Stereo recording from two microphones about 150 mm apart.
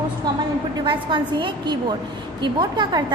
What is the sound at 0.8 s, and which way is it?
A woman's voice, 30° right (ahead or behind).